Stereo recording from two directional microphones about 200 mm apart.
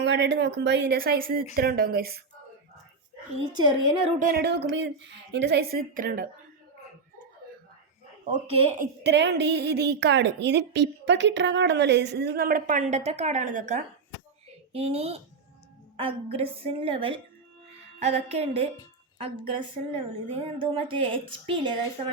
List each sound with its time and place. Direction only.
0.0 s a woman's voice: 60° right (ahead or behind)
3.5 s a woman's voice: 25° right (ahead or behind)
4.3 s a woman's voice: 55° right (ahead or behind)
8.2 s speech: 30° right (ahead or behind)
9.0 s a woman's voice: 60° right (ahead or behind); by 21.2 s 25° right (ahead or behind)